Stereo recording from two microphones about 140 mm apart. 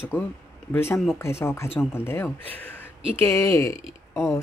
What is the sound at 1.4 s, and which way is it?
Speech, 20° left (ahead or behind).